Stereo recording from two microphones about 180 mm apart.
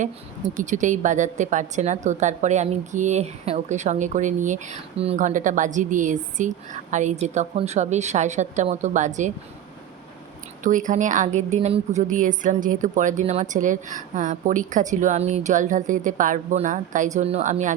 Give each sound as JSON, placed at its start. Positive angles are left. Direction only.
{"t": 0.0, "sound": "a woman's voice", "side_deg": -45}
{"t": 10.6, "sound": "a woman's voice", "side_deg": -45}